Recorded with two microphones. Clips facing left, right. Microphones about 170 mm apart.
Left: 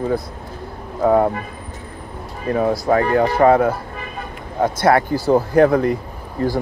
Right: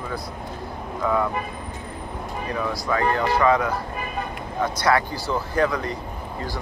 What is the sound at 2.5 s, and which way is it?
Speech, 50° left (ahead or behind).